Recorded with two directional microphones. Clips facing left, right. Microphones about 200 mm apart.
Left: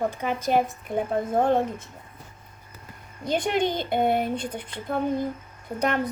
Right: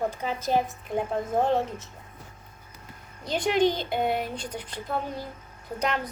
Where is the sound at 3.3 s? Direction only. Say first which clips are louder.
Right 1 dB; 55° left (ahead or behind).